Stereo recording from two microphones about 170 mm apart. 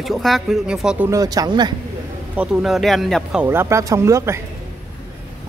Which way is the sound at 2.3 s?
Centre (ahead or behind).